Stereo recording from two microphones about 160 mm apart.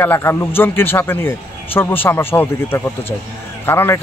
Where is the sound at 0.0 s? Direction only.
15° left (ahead or behind).